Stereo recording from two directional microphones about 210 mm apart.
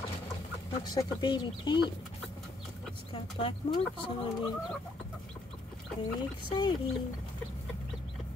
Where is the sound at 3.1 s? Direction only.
25° left (ahead or behind).